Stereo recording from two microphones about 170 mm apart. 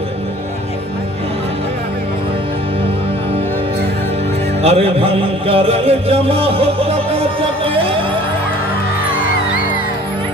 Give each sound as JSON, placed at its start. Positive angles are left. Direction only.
{"t": 4.6, "sound": "music", "side_deg": -35}